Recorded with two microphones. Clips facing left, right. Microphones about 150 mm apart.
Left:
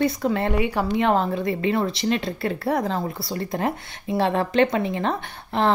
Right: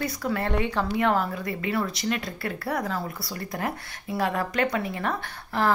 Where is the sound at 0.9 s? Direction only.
25° left (ahead or behind).